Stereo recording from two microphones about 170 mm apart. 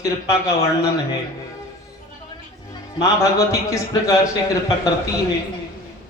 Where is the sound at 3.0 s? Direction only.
20° left (ahead or behind).